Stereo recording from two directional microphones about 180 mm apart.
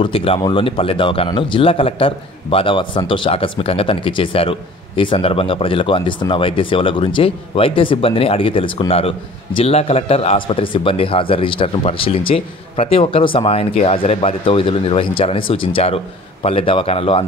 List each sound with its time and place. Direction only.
0.0 s speech: 30° left (ahead or behind)